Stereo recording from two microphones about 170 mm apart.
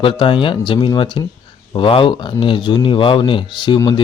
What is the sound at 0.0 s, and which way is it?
Speech, 30° left (ahead or behind).